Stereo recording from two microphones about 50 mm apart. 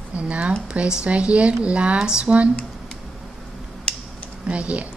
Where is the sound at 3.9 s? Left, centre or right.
Centre.